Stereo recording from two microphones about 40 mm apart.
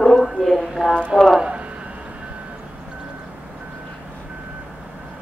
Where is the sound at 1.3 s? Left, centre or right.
Right.